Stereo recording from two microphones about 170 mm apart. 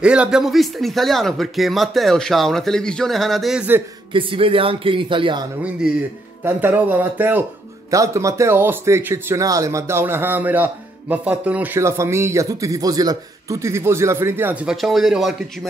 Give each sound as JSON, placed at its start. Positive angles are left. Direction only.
{"t": 0.0, "sound": "speech", "side_deg": -5}
{"t": 4.1, "sound": "a man's voice", "side_deg": -30}
{"t": 5.6, "sound": "speech", "side_deg": -5}